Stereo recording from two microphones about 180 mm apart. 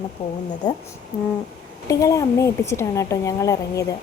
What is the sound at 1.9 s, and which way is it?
A woman's voice, 15° left (ahead or behind).